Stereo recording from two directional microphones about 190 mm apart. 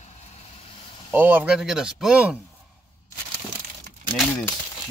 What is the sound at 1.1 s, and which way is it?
Speech, 10° right (ahead or behind).